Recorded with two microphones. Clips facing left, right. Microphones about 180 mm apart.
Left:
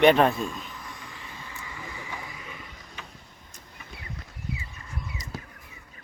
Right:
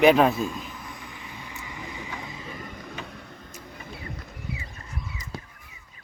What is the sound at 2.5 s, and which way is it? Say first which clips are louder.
Vehicle: right 7 dB; 45° right (ahead or behind).